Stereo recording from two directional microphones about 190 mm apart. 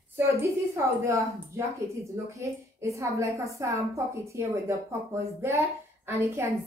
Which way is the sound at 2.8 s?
15° right (ahead or behind).